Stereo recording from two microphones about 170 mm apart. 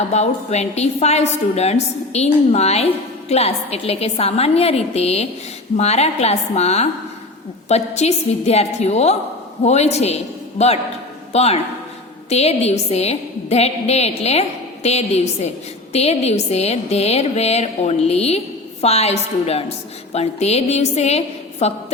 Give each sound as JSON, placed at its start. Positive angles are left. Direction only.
{"t": 0.1, "sound": "a woman's voice", "side_deg": 40}